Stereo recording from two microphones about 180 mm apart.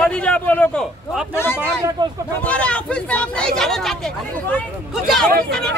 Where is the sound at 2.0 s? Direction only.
25° right (ahead or behind).